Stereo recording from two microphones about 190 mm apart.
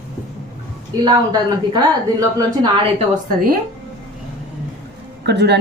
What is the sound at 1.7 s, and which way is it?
Speech, 20° right (ahead or behind).